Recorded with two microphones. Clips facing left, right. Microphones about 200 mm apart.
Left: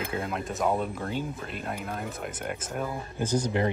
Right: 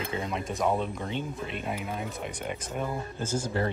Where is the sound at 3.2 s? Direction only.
20° left (ahead or behind).